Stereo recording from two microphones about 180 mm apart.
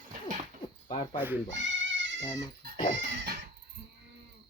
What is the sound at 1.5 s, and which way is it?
Goat, 90° right.